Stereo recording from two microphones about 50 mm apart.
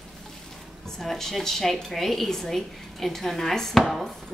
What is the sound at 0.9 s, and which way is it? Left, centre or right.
A woman's voice, centre.